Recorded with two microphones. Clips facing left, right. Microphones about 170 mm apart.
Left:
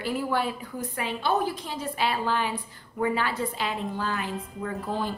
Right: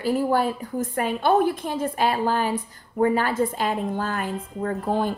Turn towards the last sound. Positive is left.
turn(degrees=-50)  # may be behind; listen again after turning